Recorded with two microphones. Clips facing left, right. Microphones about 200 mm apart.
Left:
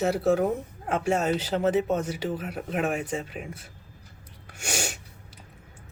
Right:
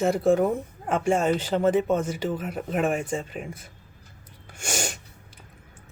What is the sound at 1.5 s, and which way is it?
Speech, 5° left (ahead or behind).